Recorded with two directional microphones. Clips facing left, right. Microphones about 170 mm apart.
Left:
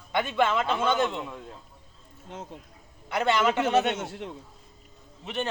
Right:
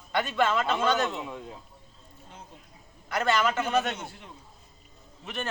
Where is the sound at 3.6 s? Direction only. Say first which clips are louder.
Left 4 dB; 75° left (ahead or behind).